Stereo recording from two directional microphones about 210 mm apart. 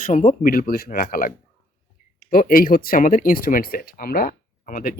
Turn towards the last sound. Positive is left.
turn(degrees=40)  # may be behind; listen again after turning